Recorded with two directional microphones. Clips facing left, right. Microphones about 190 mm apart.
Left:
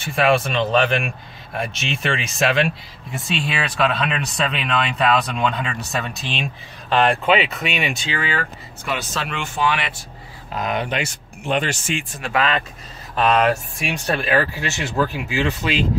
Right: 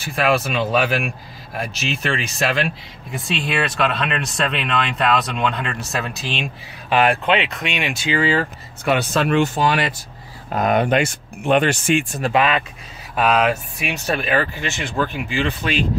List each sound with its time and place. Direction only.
0.0 s speech: centre (ahead or behind)
8.1 s speech: 30° right (ahead or behind)
8.8 s speech: 60° right (ahead or behind); by 9.9 s 40° right (ahead or behind)
10.5 s speech: 50° right (ahead or behind)
13.1 s speech: 5° right (ahead or behind)